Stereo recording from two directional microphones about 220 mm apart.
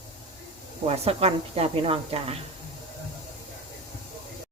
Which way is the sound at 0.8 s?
25° right (ahead or behind).